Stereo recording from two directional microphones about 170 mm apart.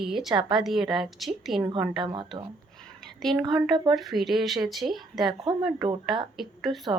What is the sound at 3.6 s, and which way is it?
Speech, 25° right (ahead or behind).